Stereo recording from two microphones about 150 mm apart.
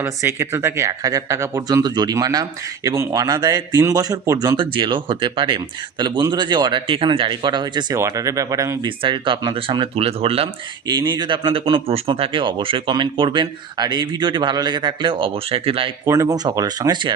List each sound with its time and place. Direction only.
0.0 s speech: 15° right (ahead or behind)
9.0 s speech: 35° right (ahead or behind)
16.0 s speech: 20° right (ahead or behind)